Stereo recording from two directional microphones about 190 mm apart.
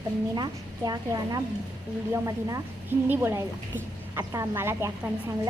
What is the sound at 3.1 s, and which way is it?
A child's voice, 15° right (ahead or behind).